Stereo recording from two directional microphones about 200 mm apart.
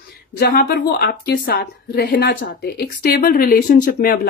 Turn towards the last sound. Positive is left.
turn(degrees=40)  # may be behind; listen again after turning